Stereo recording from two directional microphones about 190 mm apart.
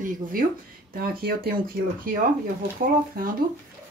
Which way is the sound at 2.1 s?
45° right (ahead or behind).